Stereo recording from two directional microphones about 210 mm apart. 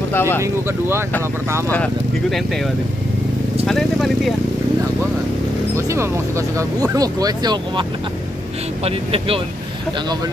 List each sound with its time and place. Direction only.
0.1 s speech: 10° left (ahead or behind)
0.4 s speech: 10° right (ahead or behind)
1.7 s speech: 5° left (ahead or behind)
3.6 s speech: centre (ahead or behind)
5.8 s speech: 15° right (ahead or behind)
8.8 s speech: 25° right (ahead or behind)